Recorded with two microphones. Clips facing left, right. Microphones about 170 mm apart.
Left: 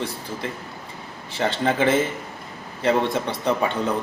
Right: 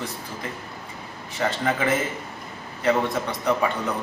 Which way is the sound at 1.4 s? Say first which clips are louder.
Left 3 dB; 30° left (ahead or behind).